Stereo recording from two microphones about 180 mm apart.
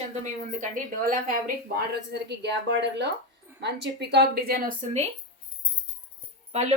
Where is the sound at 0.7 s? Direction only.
50° right (ahead or behind).